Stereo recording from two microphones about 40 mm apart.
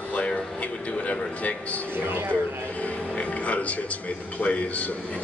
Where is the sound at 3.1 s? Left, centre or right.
Left.